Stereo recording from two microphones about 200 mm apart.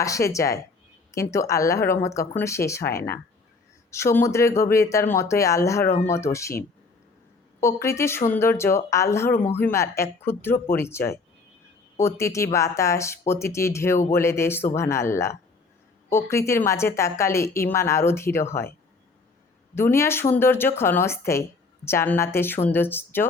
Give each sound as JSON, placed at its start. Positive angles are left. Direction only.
{"t": 0.0, "sound": "speech", "side_deg": 15}
{"t": 7.6, "sound": "speech", "side_deg": 15}
{"t": 19.7, "sound": "speech", "side_deg": 15}